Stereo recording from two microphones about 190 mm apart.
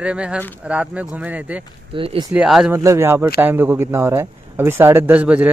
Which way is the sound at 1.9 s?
25° right (ahead or behind).